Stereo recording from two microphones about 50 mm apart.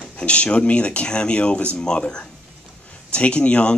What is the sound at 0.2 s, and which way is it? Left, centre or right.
Speech, left.